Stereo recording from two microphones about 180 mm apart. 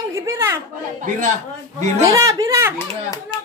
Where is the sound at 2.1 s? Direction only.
15° right (ahead or behind).